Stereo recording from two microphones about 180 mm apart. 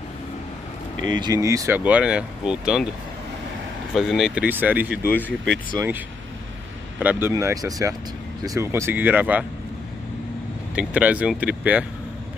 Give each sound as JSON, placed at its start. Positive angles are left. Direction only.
{"t": 1.1, "sound": "speech", "side_deg": -20}
{"t": 3.9, "sound": "speech", "side_deg": 0}
{"t": 5.1, "sound": "speech", "side_deg": 5}
{"t": 5.8, "sound": "speech", "side_deg": -10}
{"t": 10.7, "sound": "speech", "side_deg": -5}